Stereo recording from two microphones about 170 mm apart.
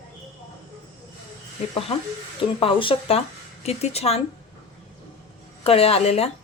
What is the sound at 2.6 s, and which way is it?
A woman's voice, 30° left (ahead or behind).